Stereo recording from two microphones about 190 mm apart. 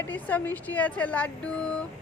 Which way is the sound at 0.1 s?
10° left (ahead or behind).